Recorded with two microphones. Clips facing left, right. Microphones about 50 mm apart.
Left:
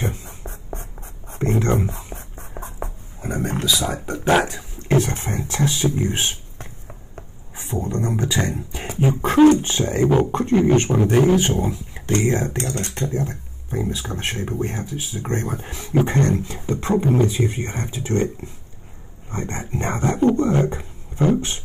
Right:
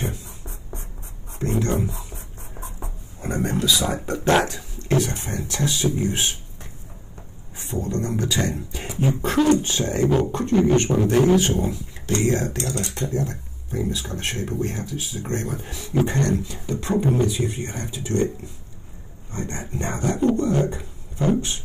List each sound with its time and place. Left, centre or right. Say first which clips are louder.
0.0 s a sound: left 3 dB; left
1.3 s whispering: left 3 dB; left
3.2 s speech: right 1 dB; centre
4.6 s speech: left 2 dB; left
7.6 s speech: left 2 dB; centre